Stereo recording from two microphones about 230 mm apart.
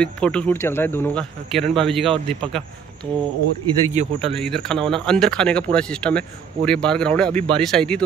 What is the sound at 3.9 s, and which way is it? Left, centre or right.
Speech, right.